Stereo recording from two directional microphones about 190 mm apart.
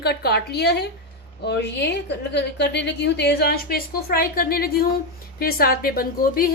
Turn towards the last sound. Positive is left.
turn(degrees=50)  # may be behind; listen again after turning